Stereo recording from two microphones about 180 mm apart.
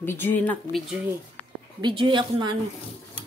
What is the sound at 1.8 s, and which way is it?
Speech, 25° right (ahead or behind).